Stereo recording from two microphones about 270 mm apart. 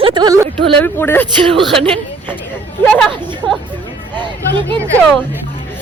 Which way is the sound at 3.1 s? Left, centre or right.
Centre.